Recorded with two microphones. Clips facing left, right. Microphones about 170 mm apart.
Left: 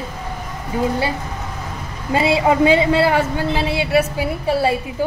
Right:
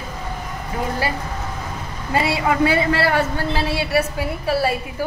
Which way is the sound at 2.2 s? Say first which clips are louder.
Left 5 dB; 20° left (ahead or behind).